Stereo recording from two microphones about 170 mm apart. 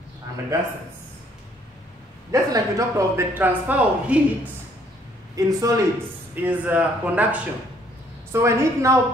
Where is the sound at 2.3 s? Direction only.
20° right (ahead or behind).